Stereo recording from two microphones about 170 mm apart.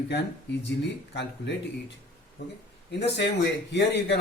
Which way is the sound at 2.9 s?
90° left.